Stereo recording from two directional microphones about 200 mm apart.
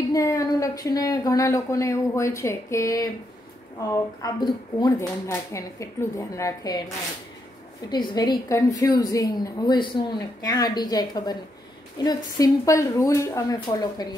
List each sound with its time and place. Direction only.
0.1 s a sound: 15° left (ahead or behind)
0.9 s speech: 15° left (ahead or behind)
7.9 s a woman's voice: 20° left (ahead or behind)